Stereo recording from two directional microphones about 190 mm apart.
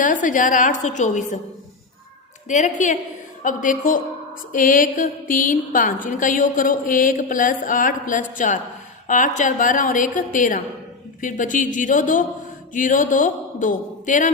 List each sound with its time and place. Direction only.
0.0 s a woman's voice: 45° left (ahead or behind)
2.5 s a woman's voice: 40° left (ahead or behind)